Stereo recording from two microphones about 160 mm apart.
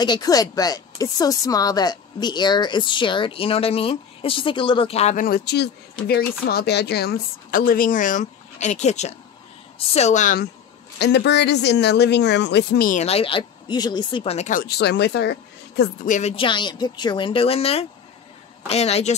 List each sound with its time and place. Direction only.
0.0 s speech: 25° left (ahead or behind)
5.1 s a woman's voice: 65° left (ahead or behind)
11.0 s speech: 90° left; by 13.0 s 65° left (ahead or behind)
13.0 s speech: 35° left (ahead or behind)
14.5 s speech: 80° left
16.1 s speech: 45° left (ahead or behind)